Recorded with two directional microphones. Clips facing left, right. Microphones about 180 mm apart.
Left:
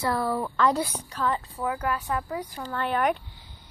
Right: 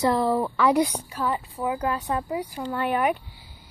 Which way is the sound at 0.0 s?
20° right (ahead or behind).